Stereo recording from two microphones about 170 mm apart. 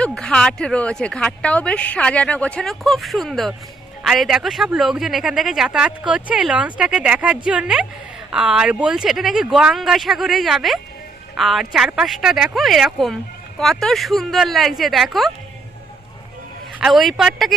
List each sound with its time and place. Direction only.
0.0 s speech: 5° left (ahead or behind)
16.7 s speech: centre (ahead or behind)